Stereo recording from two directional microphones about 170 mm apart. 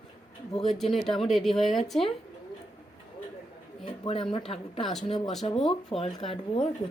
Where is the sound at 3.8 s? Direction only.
30° left (ahead or behind).